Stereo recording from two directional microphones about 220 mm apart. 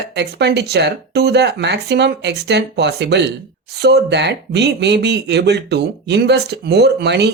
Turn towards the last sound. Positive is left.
turn(degrees=-50)  # may be behind; listen again after turning